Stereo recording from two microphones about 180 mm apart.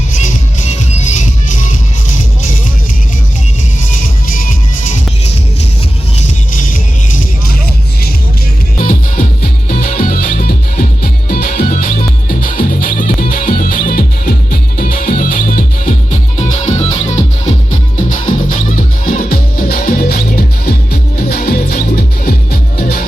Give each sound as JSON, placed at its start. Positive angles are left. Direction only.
{"t": 1.0, "sound": "music", "side_deg": 45}
{"t": 4.3, "sound": "music", "side_deg": 50}
{"t": 8.8, "sound": "music", "side_deg": 50}